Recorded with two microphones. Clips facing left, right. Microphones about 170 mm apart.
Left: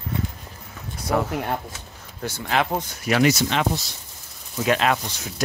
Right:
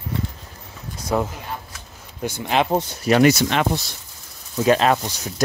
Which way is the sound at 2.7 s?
35° right (ahead or behind).